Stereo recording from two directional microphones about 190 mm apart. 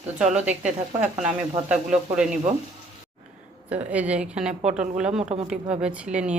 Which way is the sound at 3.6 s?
10° right (ahead or behind).